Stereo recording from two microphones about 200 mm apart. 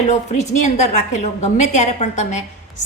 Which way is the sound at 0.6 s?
35° left (ahead or behind).